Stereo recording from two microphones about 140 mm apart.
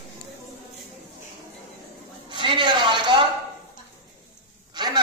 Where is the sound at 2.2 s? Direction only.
35° right (ahead or behind).